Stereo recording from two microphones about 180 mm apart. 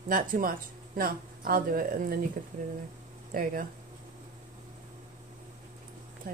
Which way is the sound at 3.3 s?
55° right (ahead or behind).